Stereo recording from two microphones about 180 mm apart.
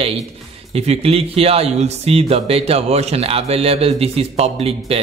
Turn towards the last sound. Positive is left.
turn(degrees=-35)  # may be behind; listen again after turning